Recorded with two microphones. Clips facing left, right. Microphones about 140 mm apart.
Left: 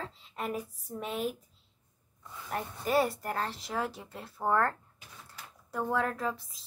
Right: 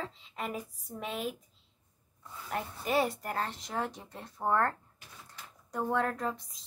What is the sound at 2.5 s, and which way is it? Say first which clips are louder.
Speech: left 1 dB; centre (ahead or behind).